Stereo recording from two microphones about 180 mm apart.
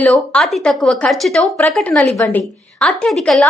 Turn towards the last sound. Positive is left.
turn(degrees=5)  # may be behind; listen again after turning